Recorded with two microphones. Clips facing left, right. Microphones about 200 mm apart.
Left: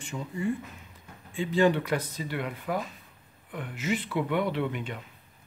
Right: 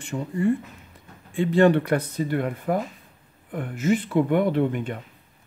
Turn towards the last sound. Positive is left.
turn(degrees=-50)  # may be behind; listen again after turning